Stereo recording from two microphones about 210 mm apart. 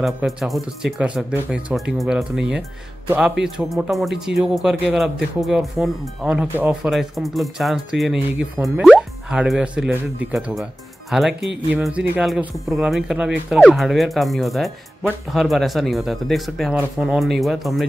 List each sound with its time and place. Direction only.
0.0 s speech: centre (ahead or behind)